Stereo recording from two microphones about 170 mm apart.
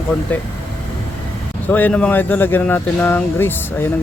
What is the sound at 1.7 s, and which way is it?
Speech, 10° left (ahead or behind).